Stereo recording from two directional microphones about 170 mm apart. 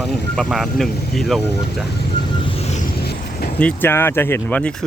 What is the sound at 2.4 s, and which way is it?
Vehicle, 35° left (ahead or behind).